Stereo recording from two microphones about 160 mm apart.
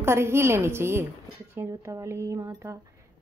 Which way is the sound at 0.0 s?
15° right (ahead or behind).